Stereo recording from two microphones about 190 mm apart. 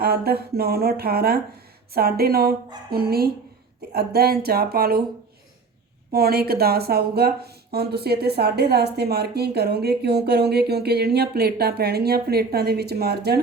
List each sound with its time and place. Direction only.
0.0 s speech: 55° right (ahead or behind)
6.1 s speech: 55° right (ahead or behind)